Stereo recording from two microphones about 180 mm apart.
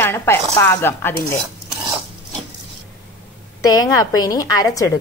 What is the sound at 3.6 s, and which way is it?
A woman's voice, 20° left (ahead or behind).